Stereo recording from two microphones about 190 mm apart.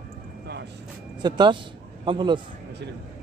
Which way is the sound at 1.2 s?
25° right (ahead or behind).